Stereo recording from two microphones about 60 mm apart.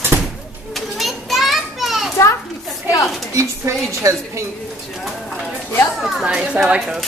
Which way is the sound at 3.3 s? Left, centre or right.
Right.